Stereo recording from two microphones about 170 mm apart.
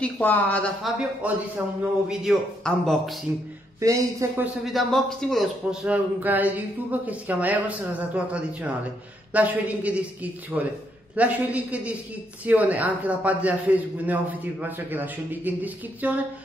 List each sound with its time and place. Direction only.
0.0 s speech: 10° left (ahead or behind)
1.2 s a man's voice: 10° right (ahead or behind)
3.8 s speech: 20° right (ahead or behind)
4.6 s a man's voice: centre (ahead or behind)